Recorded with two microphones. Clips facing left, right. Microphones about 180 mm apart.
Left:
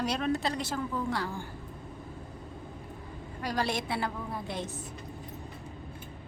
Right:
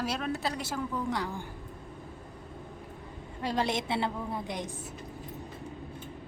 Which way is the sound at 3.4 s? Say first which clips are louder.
Right 1 dB; 25° right (ahead or behind).